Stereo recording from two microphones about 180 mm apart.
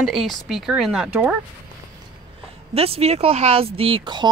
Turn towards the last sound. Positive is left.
turn(degrees=-25)  # may be behind; listen again after turning